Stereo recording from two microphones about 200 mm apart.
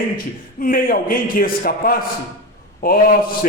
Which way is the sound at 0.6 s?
45° left (ahead or behind).